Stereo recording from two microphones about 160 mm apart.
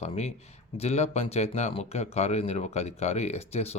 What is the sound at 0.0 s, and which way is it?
Speech, 40° left (ahead or behind).